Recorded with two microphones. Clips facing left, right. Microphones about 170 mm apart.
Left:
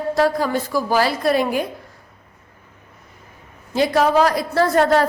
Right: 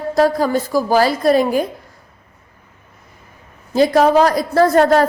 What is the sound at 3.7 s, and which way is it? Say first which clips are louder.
A woman's voice: right 4 dB; 40° right (ahead or behind).